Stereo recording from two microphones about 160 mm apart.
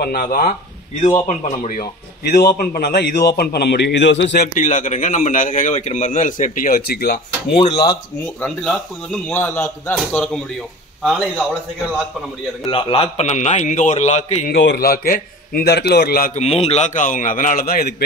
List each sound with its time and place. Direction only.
0.0 s speech: 70° left (ahead or behind)
1.6 s a man's voice: 50° left (ahead or behind)
2.2 s a man's voice: 75° left (ahead or behind)
4.6 s a man's voice: 50° left (ahead or behind); by 7.2 s 75° left (ahead or behind)
7.5 s speech: 40° left (ahead or behind)
8.4 s a man's voice: 5° left (ahead or behind)
9.9 s speech: centre (ahead or behind)
12.6 s a man's voice: 35° left (ahead or behind)
14.5 s a man's voice: 90° left
16.3 s a man's voice: 40° left (ahead or behind); by 17.9 s 65° left (ahead or behind)